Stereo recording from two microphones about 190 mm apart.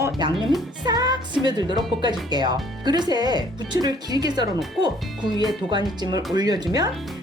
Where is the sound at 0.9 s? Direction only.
20° right (ahead or behind).